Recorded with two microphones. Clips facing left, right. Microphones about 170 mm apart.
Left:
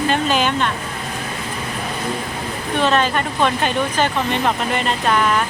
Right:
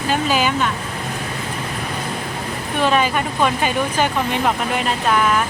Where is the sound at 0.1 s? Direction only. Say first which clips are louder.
Right 4 dB; 5° right (ahead or behind).